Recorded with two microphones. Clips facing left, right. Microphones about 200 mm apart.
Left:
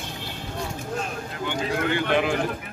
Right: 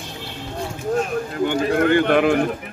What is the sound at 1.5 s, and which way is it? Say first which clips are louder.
Speech: right 7 dB; 50° right (ahead or behind).